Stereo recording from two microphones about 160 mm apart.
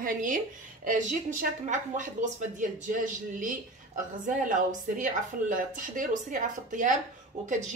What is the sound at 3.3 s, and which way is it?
A woman's voice, 55° right (ahead or behind).